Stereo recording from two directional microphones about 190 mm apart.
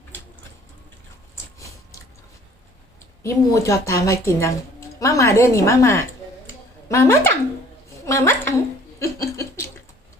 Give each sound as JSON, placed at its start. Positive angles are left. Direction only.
{"t": 3.2, "sound": "a woman's voice", "side_deg": 15}
{"t": 6.5, "sound": "a sound", "side_deg": 15}
{"t": 8.0, "sound": "a woman's voice", "side_deg": 15}
{"t": 9.0, "sound": "chuckle", "side_deg": 15}